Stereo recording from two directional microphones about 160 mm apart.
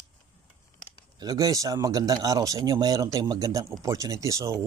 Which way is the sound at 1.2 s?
25° right (ahead or behind).